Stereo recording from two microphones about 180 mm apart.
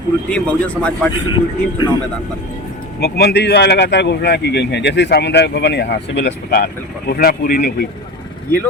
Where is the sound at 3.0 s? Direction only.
65° left (ahead or behind).